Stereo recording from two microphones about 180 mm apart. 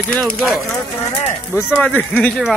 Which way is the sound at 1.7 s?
5° left (ahead or behind).